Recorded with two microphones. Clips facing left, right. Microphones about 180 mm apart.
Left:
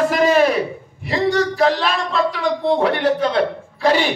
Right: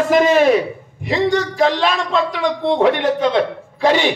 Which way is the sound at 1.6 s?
40° left (ahead or behind).